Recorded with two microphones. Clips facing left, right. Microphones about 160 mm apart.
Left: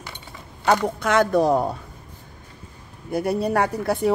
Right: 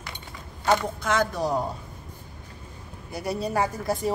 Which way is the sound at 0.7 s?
65° left (ahead or behind).